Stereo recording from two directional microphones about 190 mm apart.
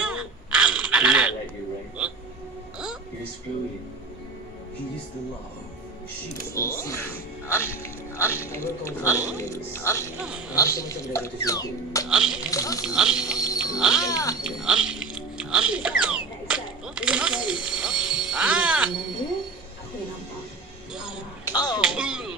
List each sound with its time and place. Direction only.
0.0 s a sound: 5° right (ahead or behind)
6.5 s speech: 15° left (ahead or behind)
9.1 s speech: 10° right (ahead or behind)
9.4 s speech: 15° left (ahead or behind)
12.1 s speech: 5° right (ahead or behind)
12.4 s speech: 15° left (ahead or behind)
12.8 s speech: 5° right (ahead or behind)
14.0 s speech: 15° left (ahead or behind)
14.4 s speech: 5° right (ahead or behind)
20.9 s speech: 5° right (ahead or behind)
21.5 s speech: 20° left (ahead or behind)
21.8 s speech: 5° right (ahead or behind)